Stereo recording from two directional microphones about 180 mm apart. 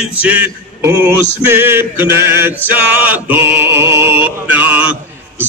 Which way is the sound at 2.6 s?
10° right (ahead or behind).